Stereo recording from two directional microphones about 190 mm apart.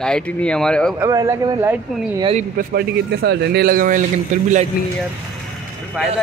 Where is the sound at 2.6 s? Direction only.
50° right (ahead or behind).